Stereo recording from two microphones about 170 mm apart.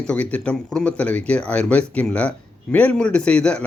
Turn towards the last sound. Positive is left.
turn(degrees=5)  # may be behind; listen again after turning